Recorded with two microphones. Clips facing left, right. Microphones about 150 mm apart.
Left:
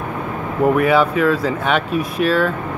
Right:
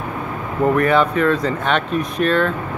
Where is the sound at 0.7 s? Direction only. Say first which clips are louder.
Left 1 dB; 5° left (ahead or behind).